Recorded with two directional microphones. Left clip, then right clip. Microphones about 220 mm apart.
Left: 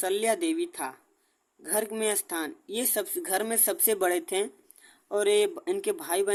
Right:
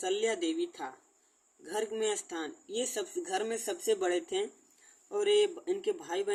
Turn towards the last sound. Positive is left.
turn(degrees=45)  # may be behind; listen again after turning